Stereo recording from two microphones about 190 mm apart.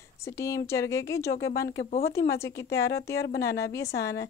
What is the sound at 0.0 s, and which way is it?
Speech, 15° left (ahead or behind).